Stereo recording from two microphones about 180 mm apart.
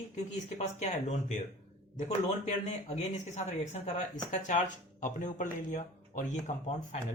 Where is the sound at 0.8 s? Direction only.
40° left (ahead or behind).